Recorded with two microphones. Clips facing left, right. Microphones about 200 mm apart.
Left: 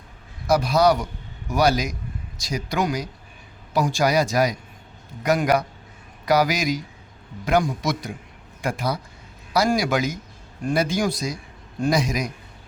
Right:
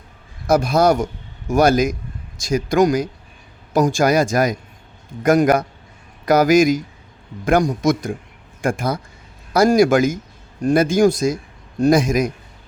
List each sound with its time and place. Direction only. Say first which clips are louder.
0.4 s speech: right 3 dB; 50° right (ahead or behind)